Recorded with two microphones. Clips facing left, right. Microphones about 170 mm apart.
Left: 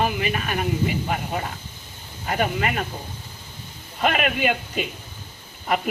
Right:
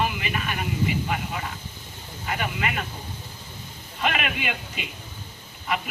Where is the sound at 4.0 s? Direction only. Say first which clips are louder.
Left 5 dB; 45° left (ahead or behind).